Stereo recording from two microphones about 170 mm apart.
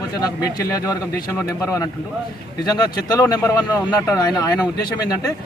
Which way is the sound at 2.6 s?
20° left (ahead or behind).